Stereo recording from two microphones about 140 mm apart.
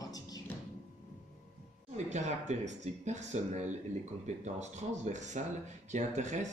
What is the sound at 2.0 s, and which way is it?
Speech, 55° right (ahead or behind).